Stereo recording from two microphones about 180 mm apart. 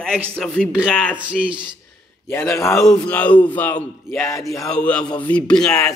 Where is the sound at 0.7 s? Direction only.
5° right (ahead or behind).